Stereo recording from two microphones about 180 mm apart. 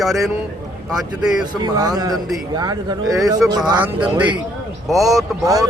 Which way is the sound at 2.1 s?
Centre (ahead or behind).